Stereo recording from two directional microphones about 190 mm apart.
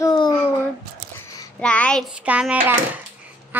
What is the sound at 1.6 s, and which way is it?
Child singing, 5° left (ahead or behind).